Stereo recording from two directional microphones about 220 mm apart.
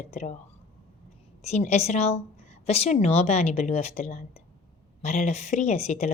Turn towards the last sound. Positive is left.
turn(degrees=30)  # may be behind; listen again after turning